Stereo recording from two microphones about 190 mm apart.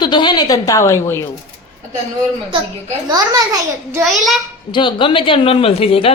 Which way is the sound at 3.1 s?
20° right (ahead or behind).